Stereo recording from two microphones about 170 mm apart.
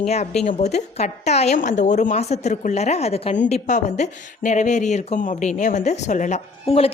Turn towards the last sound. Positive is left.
turn(degrees=35)  # may be behind; listen again after turning